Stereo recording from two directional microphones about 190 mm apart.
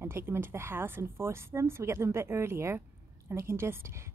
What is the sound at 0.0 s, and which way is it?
Speech, 10° right (ahead or behind).